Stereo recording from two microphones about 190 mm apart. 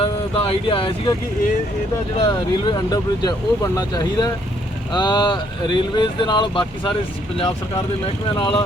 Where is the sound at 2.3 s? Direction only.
20° left (ahead or behind).